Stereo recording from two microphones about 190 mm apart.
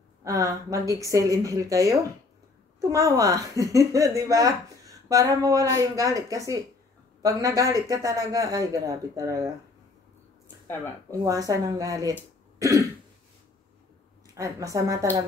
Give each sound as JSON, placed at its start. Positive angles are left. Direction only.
{"t": 0.2, "sound": "speech", "side_deg": -15}
{"t": 11.1, "sound": "speech", "side_deg": -20}
{"t": 12.5, "sound": "throat clearing", "side_deg": -15}
{"t": 14.3, "sound": "speech", "side_deg": -15}